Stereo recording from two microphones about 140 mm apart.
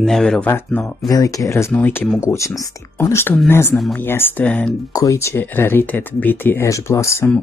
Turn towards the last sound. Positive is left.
turn(degrees=20)  # may be behind; listen again after turning